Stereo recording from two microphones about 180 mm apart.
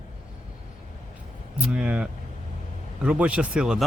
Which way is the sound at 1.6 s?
5° right (ahead or behind).